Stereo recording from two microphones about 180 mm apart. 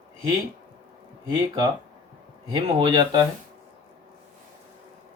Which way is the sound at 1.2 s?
20° right (ahead or behind).